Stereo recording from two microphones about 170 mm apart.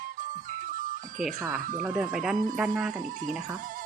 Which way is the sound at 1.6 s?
55° right (ahead or behind).